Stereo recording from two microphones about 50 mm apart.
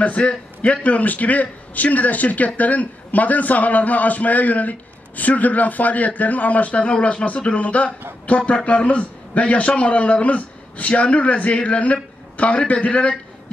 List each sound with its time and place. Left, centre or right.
0.0 s a man's voice: left